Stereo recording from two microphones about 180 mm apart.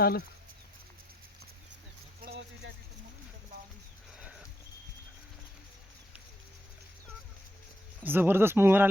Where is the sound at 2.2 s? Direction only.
55° right (ahead or behind).